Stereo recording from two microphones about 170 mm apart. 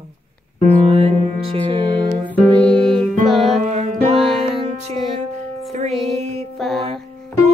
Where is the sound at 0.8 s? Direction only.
35° right (ahead or behind).